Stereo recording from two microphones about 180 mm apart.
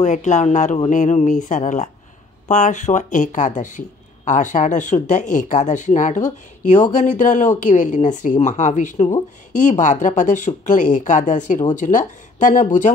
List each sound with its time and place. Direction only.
0.0 s speech: 40° left (ahead or behind)